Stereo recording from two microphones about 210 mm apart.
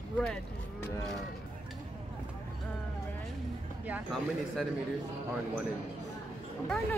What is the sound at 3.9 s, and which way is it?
Speech, centre (ahead or behind).